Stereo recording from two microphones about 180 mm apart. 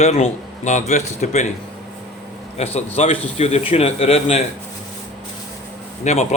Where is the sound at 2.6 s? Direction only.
35° left (ahead or behind).